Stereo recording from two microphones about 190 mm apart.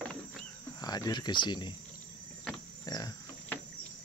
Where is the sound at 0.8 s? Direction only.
20° left (ahead or behind).